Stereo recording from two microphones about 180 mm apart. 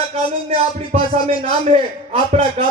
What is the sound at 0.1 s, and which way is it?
A man's voice, 35° right (ahead or behind).